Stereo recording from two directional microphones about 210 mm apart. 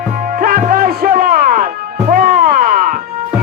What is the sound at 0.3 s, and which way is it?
Music, 45° right (ahead or behind).